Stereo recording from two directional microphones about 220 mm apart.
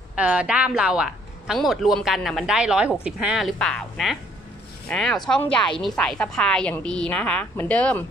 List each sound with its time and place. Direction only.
0.1 s a woman's voice: 5° right (ahead or behind)